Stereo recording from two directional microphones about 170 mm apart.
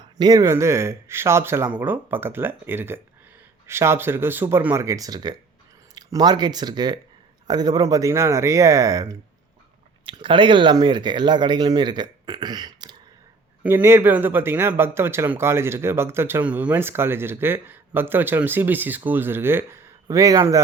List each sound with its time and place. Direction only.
0.2 s speech: 20° right (ahead or behind)
13.6 s speech: 10° right (ahead or behind)